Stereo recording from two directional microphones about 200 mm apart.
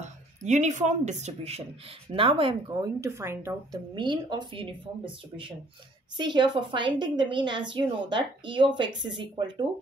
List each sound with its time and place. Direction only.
0.0 s a woman's voice: 35° right (ahead or behind)